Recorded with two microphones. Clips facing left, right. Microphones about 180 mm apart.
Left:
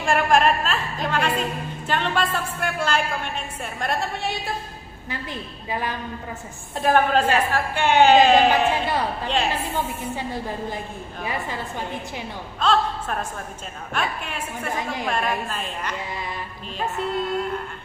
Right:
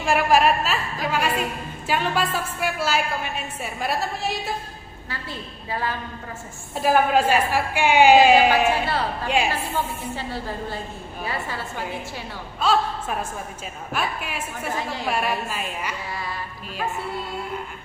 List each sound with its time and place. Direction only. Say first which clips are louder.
0.0 s a woman's voice: even; 5° right (ahead or behind)
5.1 s a woman's voice: left 2 dB; 15° left (ahead or behind)
6.8 s a woman's voice: even; 5° right (ahead or behind)
10.1 s a woman's voice: left 1 dB; 15° left (ahead or behind)
12.5 s a woman's voice: even; 10° right (ahead or behind)